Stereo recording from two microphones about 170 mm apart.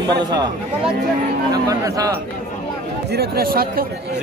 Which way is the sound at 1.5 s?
20° right (ahead or behind).